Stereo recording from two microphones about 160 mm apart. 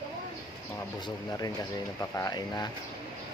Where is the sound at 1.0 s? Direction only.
25° left (ahead or behind).